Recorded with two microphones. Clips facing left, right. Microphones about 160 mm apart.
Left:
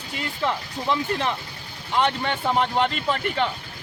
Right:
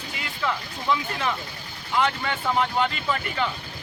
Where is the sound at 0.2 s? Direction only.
30° left (ahead or behind).